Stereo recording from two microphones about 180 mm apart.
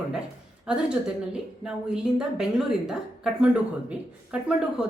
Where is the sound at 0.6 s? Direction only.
5° right (ahead or behind).